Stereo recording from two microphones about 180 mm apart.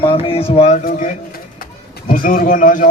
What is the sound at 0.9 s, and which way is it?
Pigeon, 45° left (ahead or behind).